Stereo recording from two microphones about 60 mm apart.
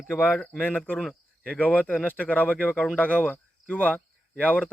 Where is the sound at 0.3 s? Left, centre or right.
Centre.